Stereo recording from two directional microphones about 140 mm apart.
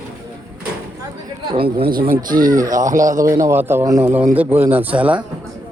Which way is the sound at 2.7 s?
70° right (ahead or behind).